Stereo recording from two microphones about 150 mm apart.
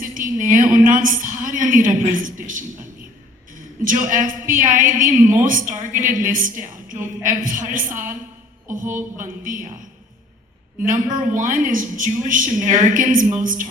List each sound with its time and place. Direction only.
0.0 s a woman's voice: 60° right (ahead or behind)
3.8 s a woman's voice: 60° right (ahead or behind)
10.8 s a woman's voice: 60° right (ahead or behind)